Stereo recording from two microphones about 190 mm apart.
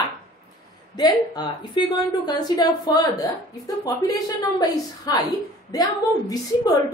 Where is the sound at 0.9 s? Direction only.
20° left (ahead or behind).